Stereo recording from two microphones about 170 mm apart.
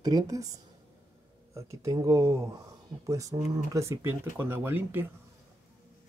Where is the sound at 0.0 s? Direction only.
20° right (ahead or behind).